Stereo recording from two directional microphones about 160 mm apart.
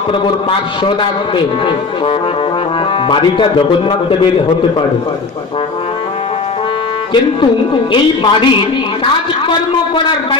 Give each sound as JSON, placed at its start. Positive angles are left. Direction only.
{"t": 3.1, "sound": "speech", "side_deg": 30}
{"t": 7.9, "sound": "speech", "side_deg": 30}